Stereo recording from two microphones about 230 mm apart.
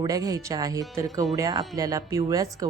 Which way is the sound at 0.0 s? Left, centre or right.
Centre.